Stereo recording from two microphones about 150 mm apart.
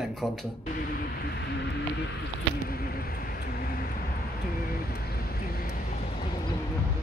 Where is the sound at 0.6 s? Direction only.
70° left (ahead or behind).